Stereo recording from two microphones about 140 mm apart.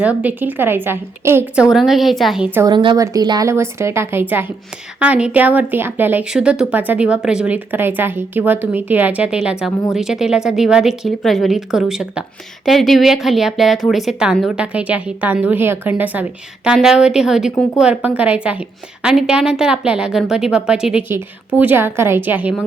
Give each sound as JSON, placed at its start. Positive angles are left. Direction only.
{"t": 0.0, "sound": "a woman's voice", "side_deg": -10}
{"t": 1.7, "sound": "a woman's voice", "side_deg": 0}
{"t": 2.7, "sound": "a woman's voice", "side_deg": -30}